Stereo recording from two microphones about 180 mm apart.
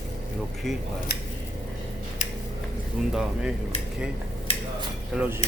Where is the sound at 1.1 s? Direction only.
65° left (ahead or behind).